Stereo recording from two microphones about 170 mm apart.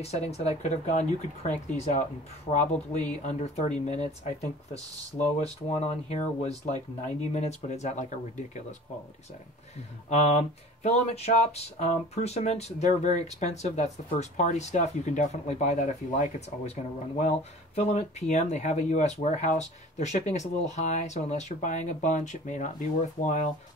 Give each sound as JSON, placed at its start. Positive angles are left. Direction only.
{"t": 0.0, "sound": "speech", "side_deg": 40}
{"t": 5.1, "sound": "speech", "side_deg": 40}
{"t": 10.0, "sound": "speech", "side_deg": 40}